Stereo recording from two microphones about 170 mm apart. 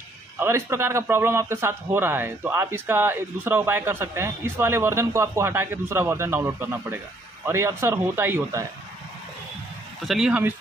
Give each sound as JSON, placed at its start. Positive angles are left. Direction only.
{"t": 0.4, "sound": "a man's voice", "side_deg": -15}
{"t": 10.0, "sound": "speech", "side_deg": -5}